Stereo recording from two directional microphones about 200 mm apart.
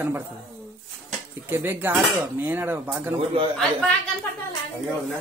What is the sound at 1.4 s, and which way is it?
Speech, 10° right (ahead or behind).